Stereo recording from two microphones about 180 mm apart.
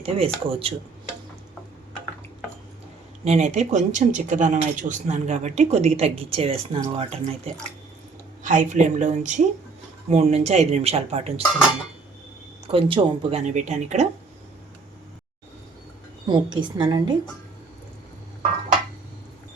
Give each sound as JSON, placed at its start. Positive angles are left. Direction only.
{"t": 0.0, "sound": "speech", "side_deg": -30}
{"t": 3.2, "sound": "speech", "side_deg": -40}
{"t": 12.7, "sound": "speech", "side_deg": -35}
{"t": 16.2, "sound": "a woman's voice", "side_deg": -25}